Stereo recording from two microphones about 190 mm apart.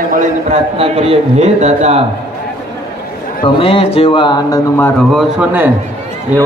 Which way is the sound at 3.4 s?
30° left (ahead or behind).